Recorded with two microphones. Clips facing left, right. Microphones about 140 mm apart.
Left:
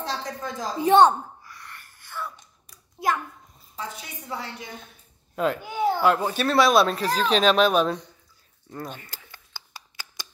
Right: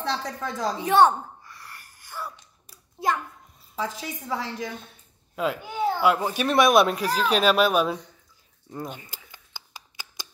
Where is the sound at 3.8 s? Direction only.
90° right.